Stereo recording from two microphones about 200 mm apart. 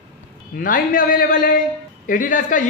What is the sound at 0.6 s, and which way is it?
A man's voice, 45° left (ahead or behind).